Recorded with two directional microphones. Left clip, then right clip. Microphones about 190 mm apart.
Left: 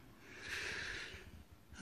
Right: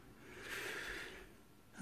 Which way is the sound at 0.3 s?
25° right (ahead or behind).